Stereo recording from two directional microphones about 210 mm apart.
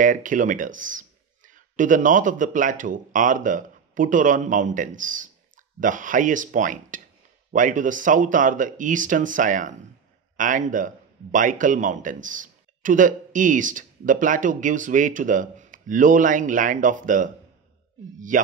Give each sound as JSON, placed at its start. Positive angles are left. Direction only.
{"t": 0.0, "sound": "speech", "side_deg": -40}
{"t": 18.3, "sound": "speech", "side_deg": -40}